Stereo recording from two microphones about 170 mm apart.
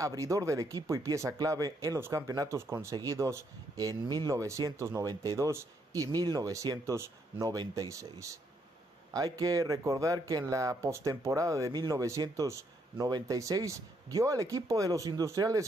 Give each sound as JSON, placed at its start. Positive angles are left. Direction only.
{"t": 0.0, "sound": "speech", "side_deg": -20}